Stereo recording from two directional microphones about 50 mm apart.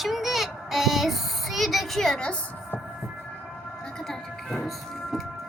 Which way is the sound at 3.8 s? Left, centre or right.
Centre.